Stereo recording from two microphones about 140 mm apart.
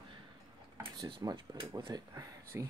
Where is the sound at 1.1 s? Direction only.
30° right (ahead or behind).